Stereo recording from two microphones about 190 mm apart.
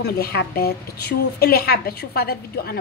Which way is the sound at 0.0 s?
55° left (ahead or behind).